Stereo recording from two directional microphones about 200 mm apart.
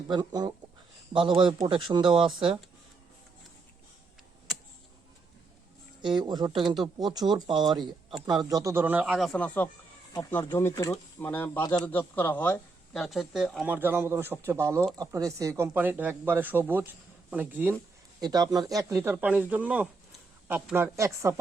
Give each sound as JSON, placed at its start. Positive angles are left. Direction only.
{"t": 0.1, "sound": "speech", "side_deg": -20}
{"t": 6.0, "sound": "speech", "side_deg": -25}
{"t": 18.2, "sound": "speech", "side_deg": -20}